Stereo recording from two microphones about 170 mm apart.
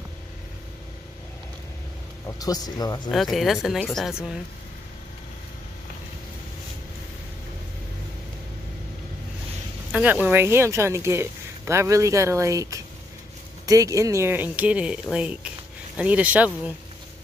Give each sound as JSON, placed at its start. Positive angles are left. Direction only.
{"t": 2.2, "sound": "speech", "side_deg": 20}
{"t": 3.1, "sound": "speech", "side_deg": 0}
{"t": 9.9, "sound": "speech", "side_deg": -5}